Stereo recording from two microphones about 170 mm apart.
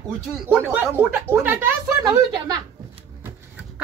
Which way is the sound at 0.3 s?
10° right (ahead or behind).